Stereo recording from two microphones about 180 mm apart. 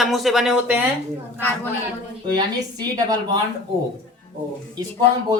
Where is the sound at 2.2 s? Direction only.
20° right (ahead or behind).